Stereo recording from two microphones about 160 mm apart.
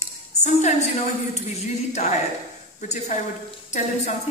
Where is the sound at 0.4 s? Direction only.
45° left (ahead or behind).